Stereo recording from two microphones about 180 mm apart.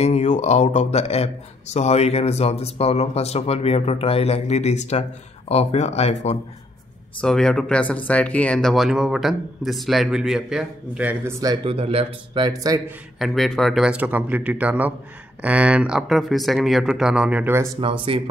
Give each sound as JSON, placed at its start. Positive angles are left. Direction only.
{"t": 0.0, "sound": "speech", "side_deg": 40}
{"t": 7.2, "sound": "speech", "side_deg": 5}
{"t": 11.6, "sound": "speech", "side_deg": -30}
{"t": 13.2, "sound": "speech", "side_deg": 0}